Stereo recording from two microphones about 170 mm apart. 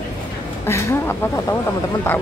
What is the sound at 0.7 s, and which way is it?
Speech, 15° left (ahead or behind).